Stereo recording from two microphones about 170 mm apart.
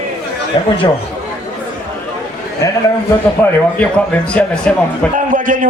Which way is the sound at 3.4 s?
10° left (ahead or behind).